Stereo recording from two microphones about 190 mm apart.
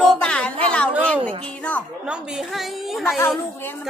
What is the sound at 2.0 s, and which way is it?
A woman's voice, centre (ahead or behind).